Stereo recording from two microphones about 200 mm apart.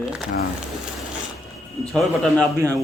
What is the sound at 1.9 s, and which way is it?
Speech, centre (ahead or behind).